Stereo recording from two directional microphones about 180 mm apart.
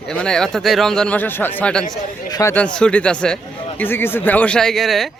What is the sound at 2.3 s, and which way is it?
A man's voice, 15° left (ahead or behind).